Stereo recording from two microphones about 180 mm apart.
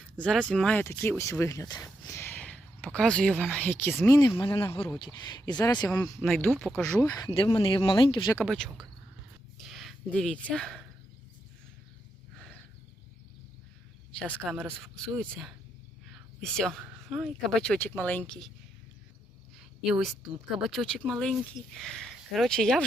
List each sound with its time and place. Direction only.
0.2 s speech: 5° left (ahead or behind)
6.0 s speech: 5° left (ahead or behind)
7.0 s speech: 20° left (ahead or behind)
8.4 s speech: 5° left (ahead or behind)
9.6 s a sound: centre (ahead or behind)
14.3 s speech: centre (ahead or behind)
19.8 s speech: 5° right (ahead or behind)